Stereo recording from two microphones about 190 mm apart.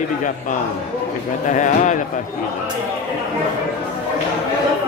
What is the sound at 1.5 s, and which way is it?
Speech, 40° left (ahead or behind).